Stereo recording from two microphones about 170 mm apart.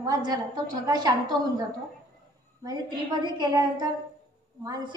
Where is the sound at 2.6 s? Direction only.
25° right (ahead or behind).